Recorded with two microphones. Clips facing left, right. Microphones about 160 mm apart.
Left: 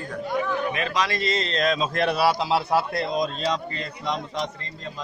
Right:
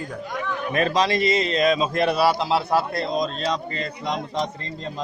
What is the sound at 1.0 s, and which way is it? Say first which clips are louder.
A man's voice: right 5 dB; 20° right (ahead or behind).